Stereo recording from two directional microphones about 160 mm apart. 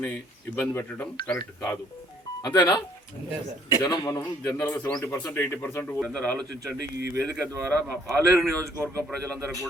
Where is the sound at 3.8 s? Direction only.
25° left (ahead or behind).